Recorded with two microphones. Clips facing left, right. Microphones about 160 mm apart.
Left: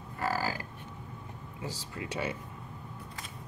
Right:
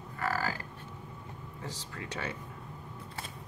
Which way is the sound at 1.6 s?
10° left (ahead or behind).